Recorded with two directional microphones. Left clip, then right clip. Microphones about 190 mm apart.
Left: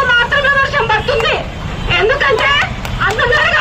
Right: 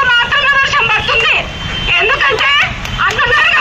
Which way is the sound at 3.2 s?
30° left (ahead or behind).